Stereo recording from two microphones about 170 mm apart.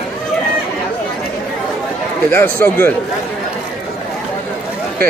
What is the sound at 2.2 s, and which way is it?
Speech, 10° left (ahead or behind).